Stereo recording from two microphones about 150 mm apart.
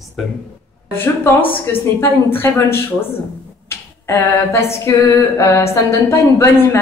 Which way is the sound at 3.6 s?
15° left (ahead or behind).